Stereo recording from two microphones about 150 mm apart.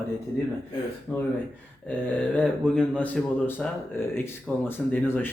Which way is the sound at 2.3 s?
5° left (ahead or behind).